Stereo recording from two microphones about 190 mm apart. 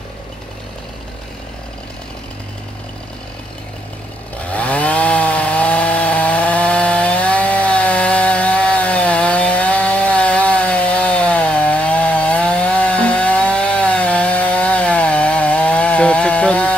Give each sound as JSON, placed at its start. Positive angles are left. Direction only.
{"t": 4.4, "sound": "chainsaw", "side_deg": 5}